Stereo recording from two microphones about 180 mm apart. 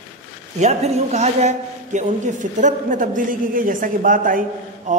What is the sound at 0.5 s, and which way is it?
A man's voice, 40° right (ahead or behind).